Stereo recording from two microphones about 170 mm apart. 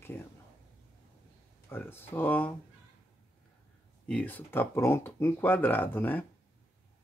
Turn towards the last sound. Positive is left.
turn(degrees=10)  # may be behind; listen again after turning